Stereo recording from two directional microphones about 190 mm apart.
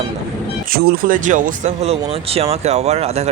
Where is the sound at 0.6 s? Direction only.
55° right (ahead or behind).